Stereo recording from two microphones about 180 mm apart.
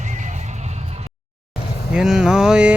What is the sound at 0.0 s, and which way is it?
Music, 40° right (ahead or behind).